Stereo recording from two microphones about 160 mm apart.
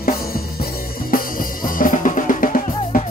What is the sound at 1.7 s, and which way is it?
Drum, 55° left (ahead or behind).